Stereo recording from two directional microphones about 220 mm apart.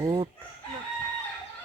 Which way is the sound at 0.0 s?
20° right (ahead or behind).